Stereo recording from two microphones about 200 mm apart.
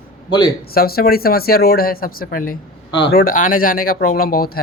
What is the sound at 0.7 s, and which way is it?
Speech, 50° left (ahead or behind).